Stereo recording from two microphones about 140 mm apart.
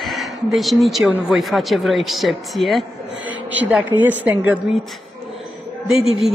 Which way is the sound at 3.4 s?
10° right (ahead or behind).